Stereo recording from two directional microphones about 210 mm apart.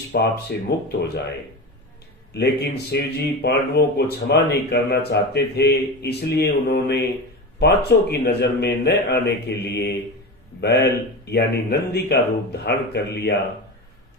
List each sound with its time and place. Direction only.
0.1 s speech: 50° left (ahead or behind)
2.3 s speech: 50° left (ahead or behind)